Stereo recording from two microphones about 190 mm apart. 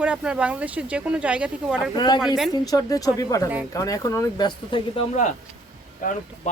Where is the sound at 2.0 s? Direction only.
25° left (ahead or behind).